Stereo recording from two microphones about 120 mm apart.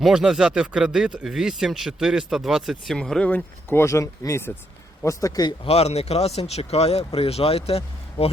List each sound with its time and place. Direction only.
0.0 s speech: 5° right (ahead or behind); by 5.5 s 30° left (ahead or behind)
5.6 s speech: 60° left (ahead or behind)